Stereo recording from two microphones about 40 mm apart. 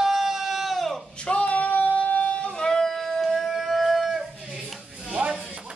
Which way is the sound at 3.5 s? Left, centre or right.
Centre.